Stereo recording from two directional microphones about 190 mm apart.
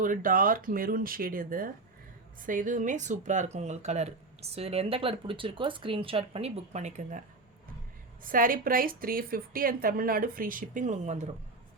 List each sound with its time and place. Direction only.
0.0 s speech: 45° right (ahead or behind)
8.2 s speech: 45° right (ahead or behind)